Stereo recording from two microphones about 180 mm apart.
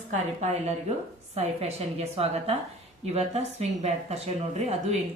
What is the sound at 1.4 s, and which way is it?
Speech, 35° right (ahead or behind).